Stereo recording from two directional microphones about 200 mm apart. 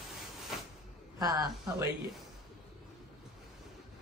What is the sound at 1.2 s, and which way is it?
Speech, 20° right (ahead or behind).